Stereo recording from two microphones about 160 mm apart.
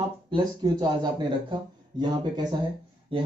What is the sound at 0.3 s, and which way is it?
A man's voice, 25° right (ahead or behind).